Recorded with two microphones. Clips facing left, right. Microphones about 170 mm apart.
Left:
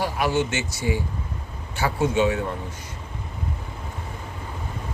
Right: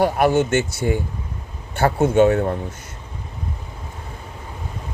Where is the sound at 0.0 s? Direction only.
50° right (ahead or behind).